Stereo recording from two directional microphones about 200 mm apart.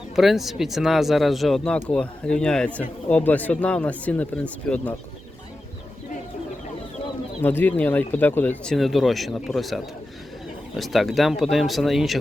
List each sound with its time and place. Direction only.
0.2 s speech: centre (ahead or behind)
7.4 s speech: 10° left (ahead or behind)